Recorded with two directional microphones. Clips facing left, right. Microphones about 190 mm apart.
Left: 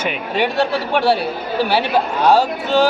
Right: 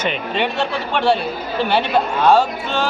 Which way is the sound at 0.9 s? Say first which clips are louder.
Left 1 dB; 10° left (ahead or behind).